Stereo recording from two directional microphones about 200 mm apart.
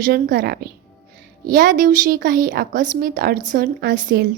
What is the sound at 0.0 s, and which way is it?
A woman's voice, 50° right (ahead or behind).